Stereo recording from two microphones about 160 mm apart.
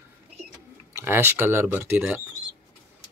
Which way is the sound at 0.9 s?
15° right (ahead or behind).